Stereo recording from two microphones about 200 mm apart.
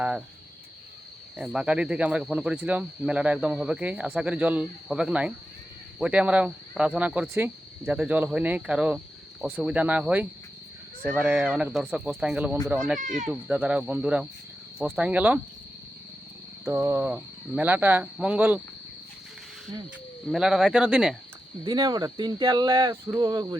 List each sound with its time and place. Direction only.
1.4 s speech: 5° right (ahead or behind)
13.0 s speech: 40° right (ahead or behind)
13.2 s speech: 5° right (ahead or behind)
16.6 s speech: 15° right (ahead or behind)
20.3 s speech: 5° right (ahead or behind)
21.6 s speech: 20° right (ahead or behind)